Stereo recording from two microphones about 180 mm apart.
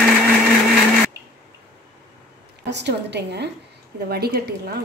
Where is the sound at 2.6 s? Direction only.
70° right (ahead or behind).